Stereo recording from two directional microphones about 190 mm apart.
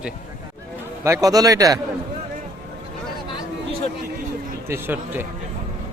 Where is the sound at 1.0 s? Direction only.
15° right (ahead or behind).